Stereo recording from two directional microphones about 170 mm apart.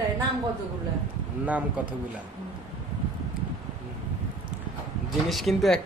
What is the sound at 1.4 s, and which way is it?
Speech, 10° right (ahead or behind).